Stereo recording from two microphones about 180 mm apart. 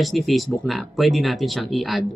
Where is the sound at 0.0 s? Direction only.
Centre (ahead or behind).